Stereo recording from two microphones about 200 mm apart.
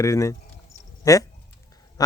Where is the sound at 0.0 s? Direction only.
15° left (ahead or behind).